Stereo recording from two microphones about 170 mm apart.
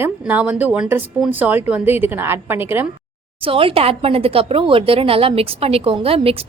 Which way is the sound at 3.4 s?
30° right (ahead or behind).